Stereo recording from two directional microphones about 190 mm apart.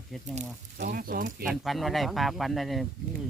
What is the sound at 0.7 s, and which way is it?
Speech, 50° right (ahead or behind).